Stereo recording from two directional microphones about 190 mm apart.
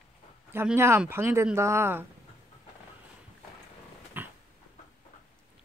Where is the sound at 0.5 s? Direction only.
10° right (ahead or behind).